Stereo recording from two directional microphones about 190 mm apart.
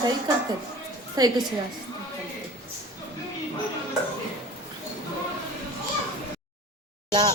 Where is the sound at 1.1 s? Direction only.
20° right (ahead or behind).